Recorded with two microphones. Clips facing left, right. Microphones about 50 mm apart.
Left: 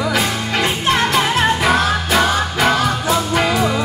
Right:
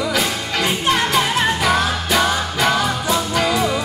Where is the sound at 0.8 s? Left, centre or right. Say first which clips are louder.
Left 1 dB; left.